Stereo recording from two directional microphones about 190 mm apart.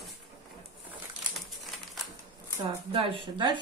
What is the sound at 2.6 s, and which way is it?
Speech, 30° right (ahead or behind).